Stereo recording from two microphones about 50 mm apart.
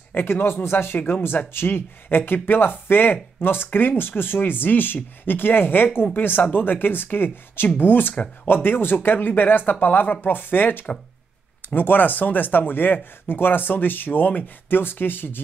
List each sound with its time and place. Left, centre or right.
0.1 s speech: left